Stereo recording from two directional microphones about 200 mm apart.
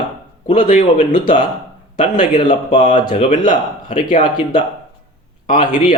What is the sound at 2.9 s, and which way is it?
Speech, 20° left (ahead or behind).